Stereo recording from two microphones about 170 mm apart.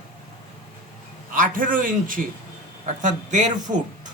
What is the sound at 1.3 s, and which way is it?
Speech, 55° right (ahead or behind).